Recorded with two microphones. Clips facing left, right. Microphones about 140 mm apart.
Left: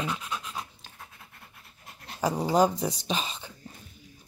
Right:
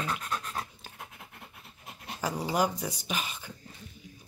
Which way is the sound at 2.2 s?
30° left (ahead or behind).